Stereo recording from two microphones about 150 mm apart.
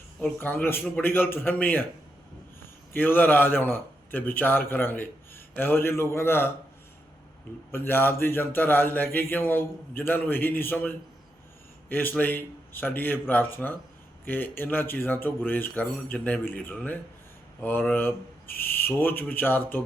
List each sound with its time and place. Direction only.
0.3 s a man's voice: 15° left (ahead or behind)
2.9 s a man's voice: 10° left (ahead or behind)
7.7 s a man's voice: 15° left (ahead or behind)
18.4 s speech: 85° left
18.9 s a man's voice: 15° left (ahead or behind)